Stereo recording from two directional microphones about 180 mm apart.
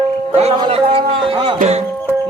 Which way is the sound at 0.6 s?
30° right (ahead or behind).